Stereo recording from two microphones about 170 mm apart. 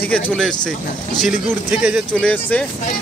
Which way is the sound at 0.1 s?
5° left (ahead or behind).